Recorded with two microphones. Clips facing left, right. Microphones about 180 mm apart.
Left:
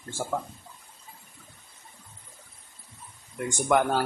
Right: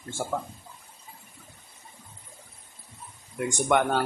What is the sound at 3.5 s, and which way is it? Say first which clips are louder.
Speech: even; centre (ahead or behind).